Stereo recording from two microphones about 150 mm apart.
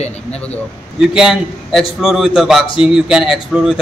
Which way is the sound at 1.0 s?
5° right (ahead or behind).